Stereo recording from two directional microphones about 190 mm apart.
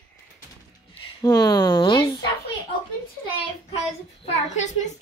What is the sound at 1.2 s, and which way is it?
Speech, 20° left (ahead or behind).